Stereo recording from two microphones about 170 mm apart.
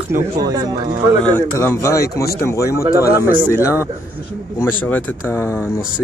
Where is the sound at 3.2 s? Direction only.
10° right (ahead or behind).